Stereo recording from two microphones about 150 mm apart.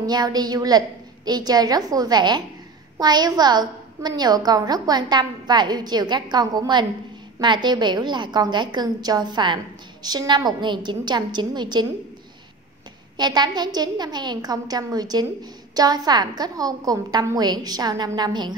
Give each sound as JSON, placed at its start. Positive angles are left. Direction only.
{"t": 0.0, "sound": "a woman's voice", "side_deg": -25}
{"t": 13.2, "sound": "a woman's voice", "side_deg": -30}